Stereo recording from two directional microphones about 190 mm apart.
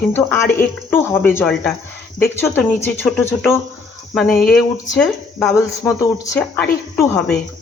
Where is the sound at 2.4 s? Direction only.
10° left (ahead or behind).